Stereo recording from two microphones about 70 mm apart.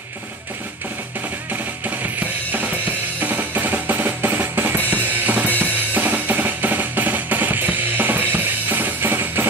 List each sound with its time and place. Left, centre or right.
1.5 s drum kit: right
5.6 s music: right